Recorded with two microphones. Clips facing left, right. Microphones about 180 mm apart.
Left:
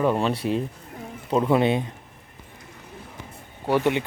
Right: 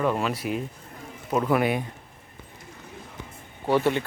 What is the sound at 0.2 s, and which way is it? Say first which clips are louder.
Speech: left 4 dB; 30° left (ahead or behind).